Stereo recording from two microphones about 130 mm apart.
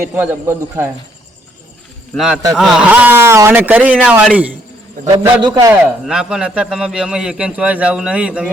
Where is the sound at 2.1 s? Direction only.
5° right (ahead or behind).